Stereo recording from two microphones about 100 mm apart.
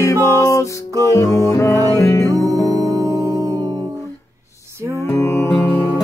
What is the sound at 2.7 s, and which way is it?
Music, 35° right (ahead or behind).